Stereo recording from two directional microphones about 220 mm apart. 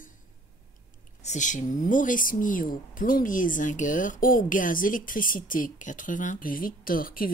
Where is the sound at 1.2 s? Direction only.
35° left (ahead or behind).